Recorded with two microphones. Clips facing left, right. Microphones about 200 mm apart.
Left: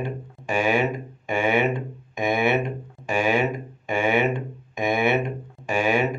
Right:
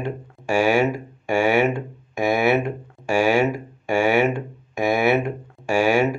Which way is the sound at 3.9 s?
75° right (ahead or behind).